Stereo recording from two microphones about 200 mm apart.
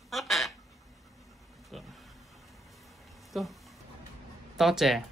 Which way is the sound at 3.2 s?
Centre (ahead or behind).